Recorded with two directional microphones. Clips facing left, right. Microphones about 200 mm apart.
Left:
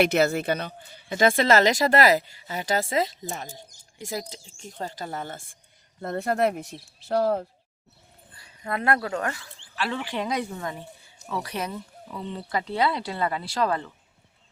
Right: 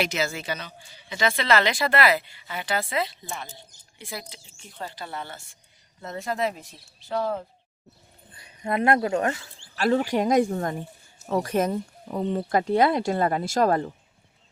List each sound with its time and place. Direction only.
0.0 s a woman's voice: 60° left (ahead or behind)
8.3 s speech: 20° right (ahead or behind)
9.7 s speech: 40° right (ahead or behind)